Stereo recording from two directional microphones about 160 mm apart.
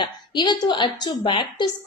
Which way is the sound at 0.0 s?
25° left (ahead or behind).